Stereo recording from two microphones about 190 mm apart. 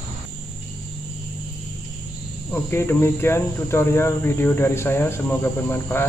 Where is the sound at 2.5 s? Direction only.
10° left (ahead or behind).